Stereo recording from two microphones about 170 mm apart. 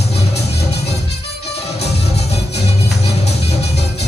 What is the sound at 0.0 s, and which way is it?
Music, 40° left (ahead or behind).